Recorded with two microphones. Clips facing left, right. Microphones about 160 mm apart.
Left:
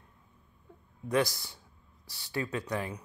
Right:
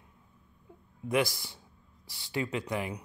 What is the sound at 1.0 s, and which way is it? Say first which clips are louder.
Speech: even; 15° right (ahead or behind).